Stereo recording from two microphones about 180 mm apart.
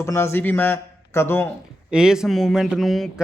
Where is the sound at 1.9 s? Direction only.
5° right (ahead or behind).